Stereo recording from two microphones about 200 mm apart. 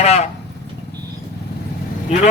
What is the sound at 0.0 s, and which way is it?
Speech, 35° left (ahead or behind).